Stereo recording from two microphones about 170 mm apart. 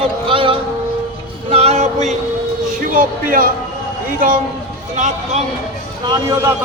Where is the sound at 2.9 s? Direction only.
55° right (ahead or behind).